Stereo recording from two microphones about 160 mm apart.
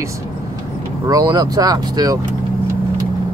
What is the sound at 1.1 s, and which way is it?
Speech, 25° right (ahead or behind).